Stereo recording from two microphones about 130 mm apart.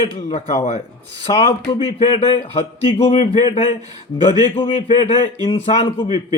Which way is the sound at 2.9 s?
45° left (ahead or behind).